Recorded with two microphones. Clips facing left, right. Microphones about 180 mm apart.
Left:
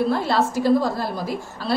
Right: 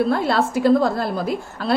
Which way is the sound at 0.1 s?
60° right (ahead or behind).